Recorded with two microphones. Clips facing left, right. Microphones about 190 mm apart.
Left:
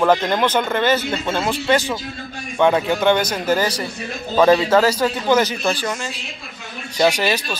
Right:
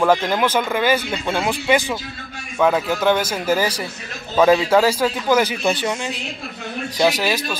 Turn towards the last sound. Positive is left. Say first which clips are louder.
# left 1 dB
turn(degrees=-5)  # may be behind; listen again after turning